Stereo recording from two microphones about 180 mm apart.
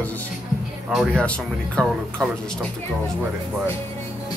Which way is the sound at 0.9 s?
Centre (ahead or behind).